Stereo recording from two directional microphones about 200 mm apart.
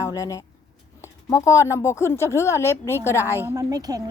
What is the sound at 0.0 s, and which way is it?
Speech, 15° left (ahead or behind).